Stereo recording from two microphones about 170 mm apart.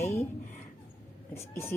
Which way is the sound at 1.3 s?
15° left (ahead or behind).